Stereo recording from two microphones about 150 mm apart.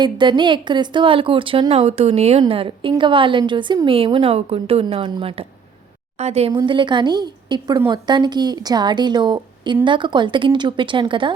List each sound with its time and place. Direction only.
0.0 s a woman's voice: 30° right (ahead or behind)
6.5 s a woman's voice: 30° right (ahead or behind)